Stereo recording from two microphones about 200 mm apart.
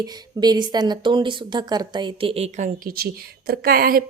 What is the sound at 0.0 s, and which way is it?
Speech, 20° right (ahead or behind).